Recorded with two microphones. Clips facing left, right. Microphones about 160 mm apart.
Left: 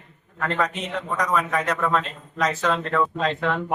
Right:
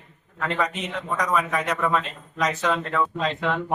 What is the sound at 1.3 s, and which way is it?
A man's voice, centre (ahead or behind).